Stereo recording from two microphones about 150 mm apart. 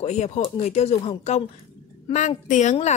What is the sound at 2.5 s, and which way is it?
Speech, 55° left (ahead or behind).